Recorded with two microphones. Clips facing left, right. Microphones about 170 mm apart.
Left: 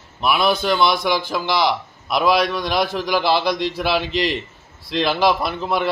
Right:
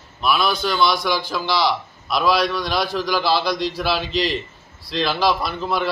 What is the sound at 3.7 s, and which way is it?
A man's voice, 20° left (ahead or behind).